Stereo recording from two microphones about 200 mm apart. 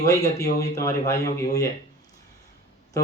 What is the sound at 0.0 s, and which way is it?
Speech, 15° left (ahead or behind).